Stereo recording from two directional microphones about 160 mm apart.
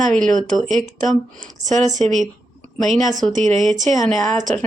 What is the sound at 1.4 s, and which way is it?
Speech, 50° right (ahead or behind).